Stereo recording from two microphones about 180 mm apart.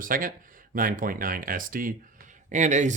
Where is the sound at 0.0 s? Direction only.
50° right (ahead or behind).